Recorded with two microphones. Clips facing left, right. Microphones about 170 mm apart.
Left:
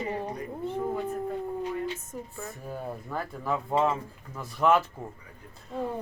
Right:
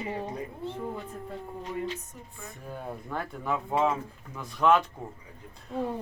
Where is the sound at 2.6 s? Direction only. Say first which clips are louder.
Even; 5° left (ahead or behind).